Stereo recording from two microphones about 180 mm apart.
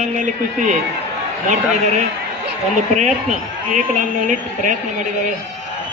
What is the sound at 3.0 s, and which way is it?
A woman's voice, 40° right (ahead or behind).